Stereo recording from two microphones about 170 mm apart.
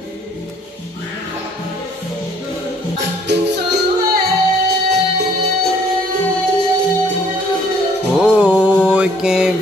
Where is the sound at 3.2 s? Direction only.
80° right.